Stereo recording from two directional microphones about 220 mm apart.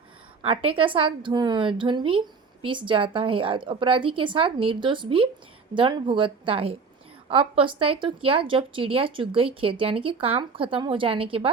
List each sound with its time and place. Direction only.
0.4 s a woman's voice: 25° right (ahead or behind)